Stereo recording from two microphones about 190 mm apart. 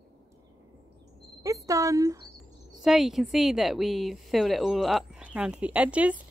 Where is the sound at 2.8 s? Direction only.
Centre (ahead or behind).